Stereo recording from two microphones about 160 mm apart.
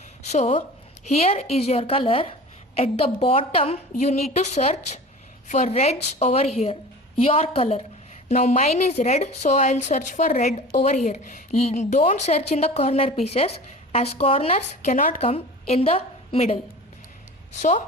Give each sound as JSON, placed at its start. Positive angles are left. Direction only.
{"t": 0.3, "sound": "a woman's voice", "side_deg": 40}
{"t": 8.3, "sound": "a woman's voice", "side_deg": 45}
{"t": 14.9, "sound": "speech", "side_deg": 55}
{"t": 15.2, "sound": "a woman's voice", "side_deg": 40}
{"t": 17.6, "sound": "a woman's voice", "side_deg": 50}